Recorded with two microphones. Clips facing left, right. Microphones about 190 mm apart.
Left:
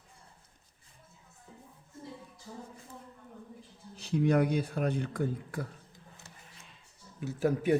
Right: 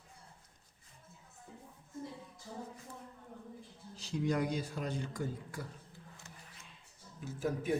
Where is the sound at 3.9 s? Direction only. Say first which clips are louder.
Left 7 dB; 60° left (ahead or behind).